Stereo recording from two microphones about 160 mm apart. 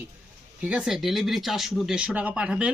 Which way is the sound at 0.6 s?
5° right (ahead or behind).